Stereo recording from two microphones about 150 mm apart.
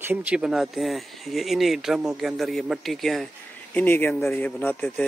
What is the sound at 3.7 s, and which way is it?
Speech, 10° left (ahead or behind).